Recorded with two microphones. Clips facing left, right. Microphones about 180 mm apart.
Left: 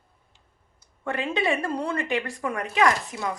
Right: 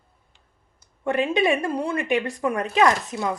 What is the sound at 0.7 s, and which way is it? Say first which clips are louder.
Speech: right 7 dB; 15° right (ahead or behind).